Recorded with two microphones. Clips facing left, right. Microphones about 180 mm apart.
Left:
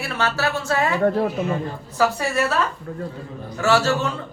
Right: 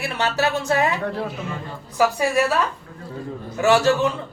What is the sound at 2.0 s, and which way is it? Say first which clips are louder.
Speech: right 2 dB; 15° right (ahead or behind).